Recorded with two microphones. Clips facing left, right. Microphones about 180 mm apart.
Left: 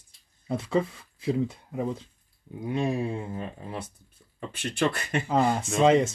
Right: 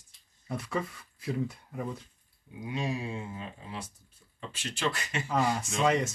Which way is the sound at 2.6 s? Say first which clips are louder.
Left 6 dB; 55° left (ahead or behind).